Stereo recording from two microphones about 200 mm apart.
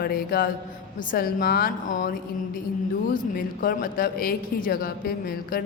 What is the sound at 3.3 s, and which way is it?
Speech, 45° left (ahead or behind).